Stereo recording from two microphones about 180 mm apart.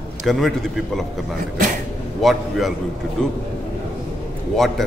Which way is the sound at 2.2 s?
Centre (ahead or behind).